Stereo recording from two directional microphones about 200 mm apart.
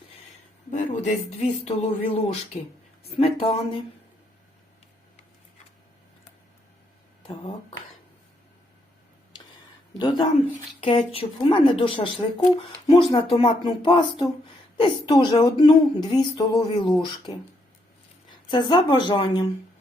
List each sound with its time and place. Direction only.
0.7 s speech: 35° left (ahead or behind)
7.2 s speech: 25° left (ahead or behind)
10.0 s speech: 25° left (ahead or behind)
18.5 s speech: 20° left (ahead or behind)